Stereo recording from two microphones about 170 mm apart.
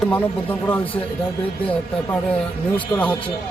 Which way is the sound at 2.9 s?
20° left (ahead or behind).